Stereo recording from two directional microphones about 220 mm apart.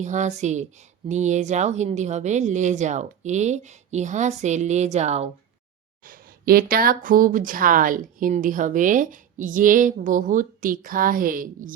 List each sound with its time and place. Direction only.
0.0 s speech: 35° right (ahead or behind)
6.1 s speech: 40° right (ahead or behind)